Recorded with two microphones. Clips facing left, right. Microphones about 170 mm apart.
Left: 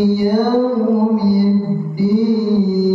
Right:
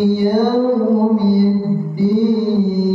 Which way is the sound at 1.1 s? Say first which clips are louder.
Even; 25° right (ahead or behind).